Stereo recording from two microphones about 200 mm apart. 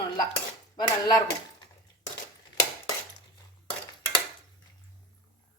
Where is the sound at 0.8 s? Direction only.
20° left (ahead or behind).